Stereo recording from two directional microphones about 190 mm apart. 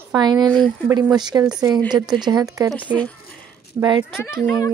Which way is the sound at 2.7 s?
5° left (ahead or behind).